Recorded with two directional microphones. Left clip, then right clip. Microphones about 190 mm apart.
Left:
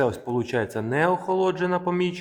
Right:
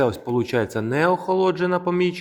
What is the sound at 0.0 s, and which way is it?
Speech, 15° right (ahead or behind).